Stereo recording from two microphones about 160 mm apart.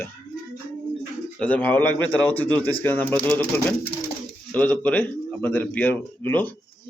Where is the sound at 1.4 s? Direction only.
10° left (ahead or behind).